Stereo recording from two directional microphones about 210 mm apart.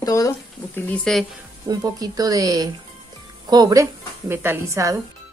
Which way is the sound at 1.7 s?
20° right (ahead or behind).